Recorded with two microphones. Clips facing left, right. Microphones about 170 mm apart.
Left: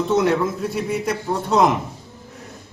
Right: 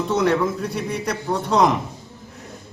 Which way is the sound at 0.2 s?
Centre (ahead or behind).